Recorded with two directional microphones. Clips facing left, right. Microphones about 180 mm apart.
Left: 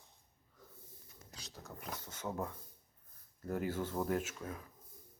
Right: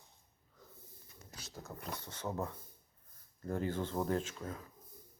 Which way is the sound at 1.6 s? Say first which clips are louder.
Right 1 dB; 5° left (ahead or behind).